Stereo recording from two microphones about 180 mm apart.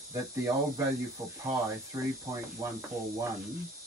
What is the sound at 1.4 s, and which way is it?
Speech, 15° right (ahead or behind).